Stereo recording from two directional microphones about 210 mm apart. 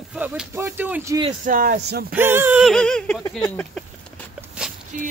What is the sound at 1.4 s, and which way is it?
Speech, 40° right (ahead or behind).